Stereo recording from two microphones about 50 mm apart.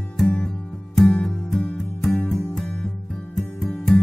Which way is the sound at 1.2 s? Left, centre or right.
Centre.